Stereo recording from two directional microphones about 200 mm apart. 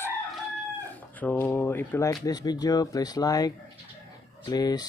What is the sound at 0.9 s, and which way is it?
Speech, 10° left (ahead or behind).